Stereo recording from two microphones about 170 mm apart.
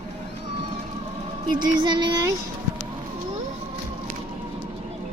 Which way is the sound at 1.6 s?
25° right (ahead or behind).